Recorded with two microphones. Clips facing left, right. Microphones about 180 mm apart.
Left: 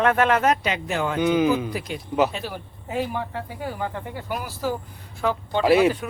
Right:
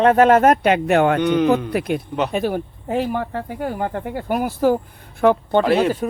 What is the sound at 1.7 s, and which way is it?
Speech, 65° right (ahead or behind).